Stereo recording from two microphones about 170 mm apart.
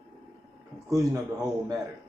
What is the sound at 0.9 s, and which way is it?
Speech, 20° right (ahead or behind).